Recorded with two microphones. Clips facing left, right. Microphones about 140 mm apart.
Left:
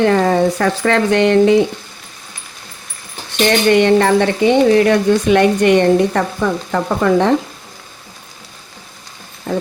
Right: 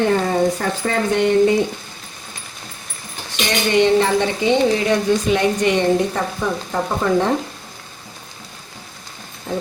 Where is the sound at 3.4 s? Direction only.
60° left (ahead or behind).